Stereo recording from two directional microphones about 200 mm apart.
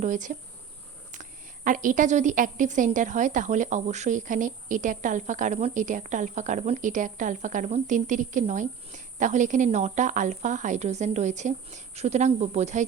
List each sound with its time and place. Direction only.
0.0 s a woman's voice: 40° right (ahead or behind)